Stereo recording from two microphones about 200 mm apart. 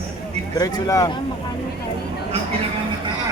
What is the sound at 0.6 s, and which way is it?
Speech, 20° left (ahead or behind).